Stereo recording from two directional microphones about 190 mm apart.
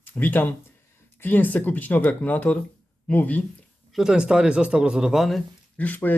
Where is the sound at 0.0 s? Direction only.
10° left (ahead or behind).